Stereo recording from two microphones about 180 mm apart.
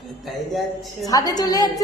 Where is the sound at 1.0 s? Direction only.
20° left (ahead or behind).